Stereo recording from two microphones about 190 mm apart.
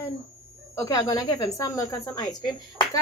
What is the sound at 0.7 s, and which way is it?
A woman's voice, 20° left (ahead or behind).